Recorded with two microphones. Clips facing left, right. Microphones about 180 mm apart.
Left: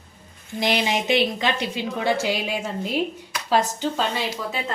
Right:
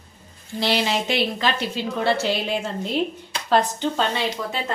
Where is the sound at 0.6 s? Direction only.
15° left (ahead or behind).